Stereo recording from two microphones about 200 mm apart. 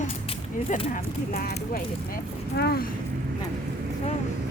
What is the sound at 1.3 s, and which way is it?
Speech, 45° left (ahead or behind).